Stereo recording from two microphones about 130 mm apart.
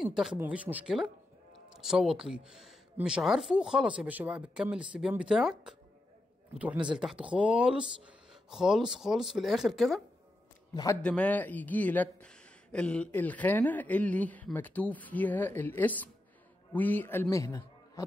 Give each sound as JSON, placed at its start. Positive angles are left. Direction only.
{"t": 0.0, "sound": "a sound", "side_deg": -5}
{"t": 0.4, "sound": "speech", "side_deg": -10}
{"t": 10.7, "sound": "a man's voice", "side_deg": 30}
{"t": 11.0, "sound": "speech", "side_deg": 10}